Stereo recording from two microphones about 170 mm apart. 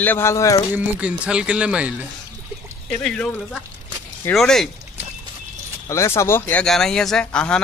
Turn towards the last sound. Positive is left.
turn(degrees=5)  # may be behind; listen again after turning